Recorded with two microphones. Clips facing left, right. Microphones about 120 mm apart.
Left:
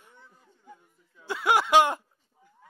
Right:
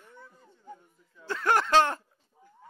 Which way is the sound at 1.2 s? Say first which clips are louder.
Left 1 dB; 10° left (ahead or behind).